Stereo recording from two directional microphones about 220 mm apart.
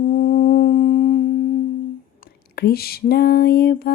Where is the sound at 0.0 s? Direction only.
40° left (ahead or behind).